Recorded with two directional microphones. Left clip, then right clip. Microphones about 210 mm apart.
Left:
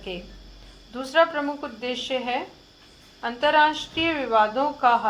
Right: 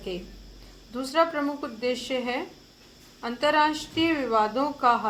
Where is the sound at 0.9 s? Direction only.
20° right (ahead or behind).